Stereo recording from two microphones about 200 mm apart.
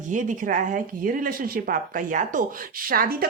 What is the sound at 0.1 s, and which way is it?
Speech, 40° right (ahead or behind).